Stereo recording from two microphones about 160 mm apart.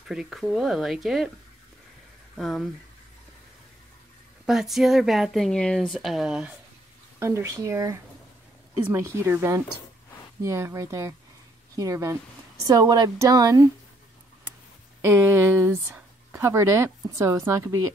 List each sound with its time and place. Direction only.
0.1 s speech: centre (ahead or behind)
2.3 s speech: centre (ahead or behind)
4.5 s speech: centre (ahead or behind)
7.2 s speech: 15° right (ahead or behind)
15.0 s speech: 15° right (ahead or behind)